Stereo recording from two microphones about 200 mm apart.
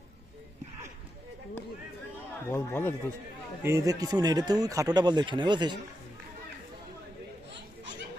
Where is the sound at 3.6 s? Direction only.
15° right (ahead or behind).